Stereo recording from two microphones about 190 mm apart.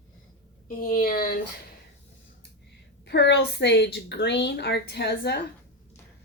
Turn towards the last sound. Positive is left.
turn(degrees=60)  # may be behind; listen again after turning